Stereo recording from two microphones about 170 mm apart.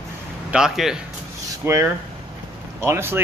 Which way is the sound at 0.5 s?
5° right (ahead or behind).